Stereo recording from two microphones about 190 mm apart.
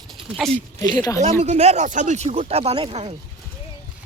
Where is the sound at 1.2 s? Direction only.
35° right (ahead or behind).